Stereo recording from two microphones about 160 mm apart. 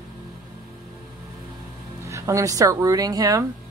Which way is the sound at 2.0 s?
20° right (ahead or behind).